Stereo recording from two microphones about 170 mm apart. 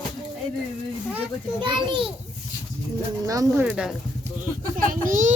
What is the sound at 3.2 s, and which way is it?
Speech, 15° right (ahead or behind).